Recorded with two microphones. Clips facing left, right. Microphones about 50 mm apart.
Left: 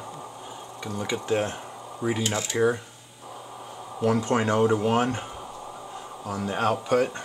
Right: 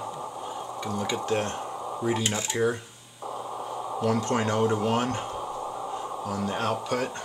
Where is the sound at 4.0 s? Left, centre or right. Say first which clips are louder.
Left 3 dB; centre.